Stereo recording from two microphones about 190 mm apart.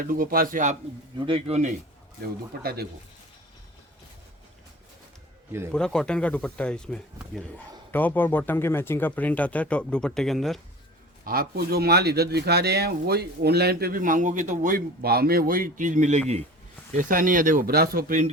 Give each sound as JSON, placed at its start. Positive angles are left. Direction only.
{"t": 0.0, "sound": "speech", "side_deg": -50}
{"t": 1.2, "sound": "speech", "side_deg": -30}
{"t": 5.5, "sound": "a man's voice", "side_deg": -15}
{"t": 5.7, "sound": "speech", "side_deg": 5}
{"t": 11.3, "sound": "speech", "side_deg": -55}